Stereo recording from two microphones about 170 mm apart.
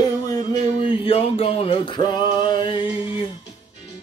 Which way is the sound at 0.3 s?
25° left (ahead or behind).